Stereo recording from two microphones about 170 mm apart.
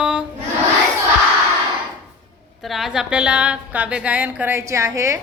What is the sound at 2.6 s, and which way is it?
A woman's voice, centre (ahead or behind).